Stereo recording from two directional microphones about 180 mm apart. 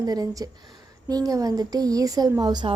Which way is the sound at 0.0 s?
20° right (ahead or behind).